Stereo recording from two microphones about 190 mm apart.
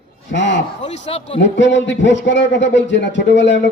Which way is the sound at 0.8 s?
35° left (ahead or behind).